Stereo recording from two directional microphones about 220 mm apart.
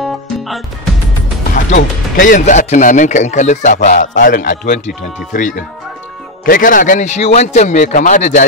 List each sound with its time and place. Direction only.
0.0 s music: centre (ahead or behind)
1.5 s speech: 35° left (ahead or behind)